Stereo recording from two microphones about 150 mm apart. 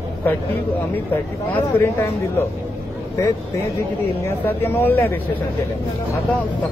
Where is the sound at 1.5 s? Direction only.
15° left (ahead or behind).